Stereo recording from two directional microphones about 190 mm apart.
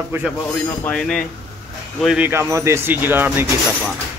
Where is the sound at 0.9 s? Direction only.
5° left (ahead or behind).